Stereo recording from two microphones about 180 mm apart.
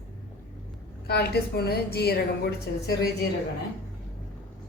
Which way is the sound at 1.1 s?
60° left (ahead or behind).